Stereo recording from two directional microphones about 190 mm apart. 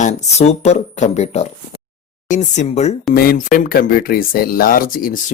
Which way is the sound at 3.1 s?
45° left (ahead or behind).